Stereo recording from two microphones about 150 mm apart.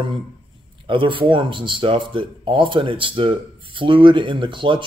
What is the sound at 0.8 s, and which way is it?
Speech, 35° right (ahead or behind).